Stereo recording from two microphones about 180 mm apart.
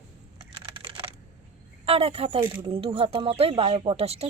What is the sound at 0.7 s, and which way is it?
Computer keyboard, 30° right (ahead or behind).